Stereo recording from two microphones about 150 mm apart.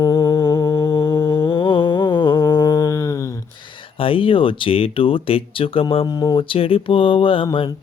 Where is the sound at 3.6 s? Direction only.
35° left (ahead or behind).